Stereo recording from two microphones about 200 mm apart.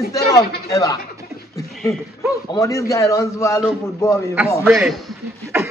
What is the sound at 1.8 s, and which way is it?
Speech, centre (ahead or behind).